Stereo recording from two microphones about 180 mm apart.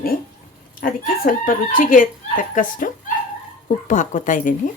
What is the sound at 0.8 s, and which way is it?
Speech, 50° left (ahead or behind).